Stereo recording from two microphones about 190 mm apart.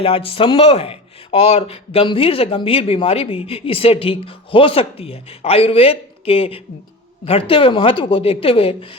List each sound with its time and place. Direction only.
0.0 s speech: 30° left (ahead or behind)